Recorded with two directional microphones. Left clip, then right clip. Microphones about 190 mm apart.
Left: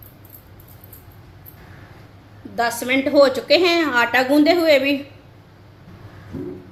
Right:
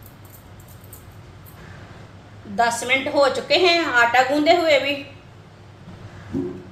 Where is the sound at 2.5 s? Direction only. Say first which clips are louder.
Right 1 dB; 50° left (ahead or behind).